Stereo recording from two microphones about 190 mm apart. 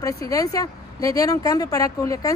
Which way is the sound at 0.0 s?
20° left (ahead or behind).